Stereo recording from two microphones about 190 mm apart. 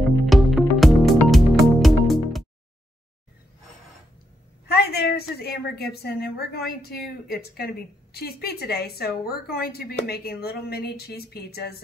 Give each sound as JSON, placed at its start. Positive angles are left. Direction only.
{"t": 0.3, "sound": "music", "side_deg": 0}
{"t": 4.6, "sound": "a woman's voice", "side_deg": 55}